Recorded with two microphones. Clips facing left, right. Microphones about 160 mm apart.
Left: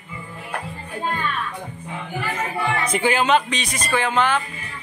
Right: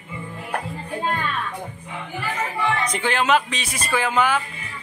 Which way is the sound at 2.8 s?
10° left (ahead or behind).